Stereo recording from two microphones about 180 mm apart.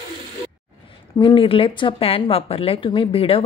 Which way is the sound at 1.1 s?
25° left (ahead or behind).